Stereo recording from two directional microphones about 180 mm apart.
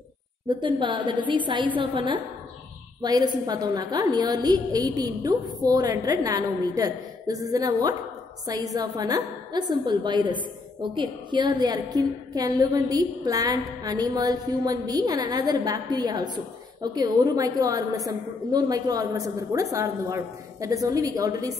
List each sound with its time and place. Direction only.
0.5 s a woman's voice: 25° right (ahead or behind)